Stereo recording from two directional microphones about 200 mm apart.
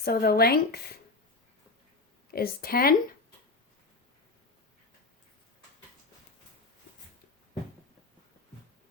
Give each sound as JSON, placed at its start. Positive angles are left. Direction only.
{"t": 0.0, "sound": "speech", "side_deg": 50}
{"t": 2.3, "sound": "speech", "side_deg": 50}